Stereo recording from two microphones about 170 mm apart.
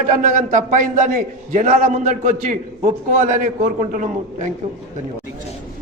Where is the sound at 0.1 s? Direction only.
45° right (ahead or behind).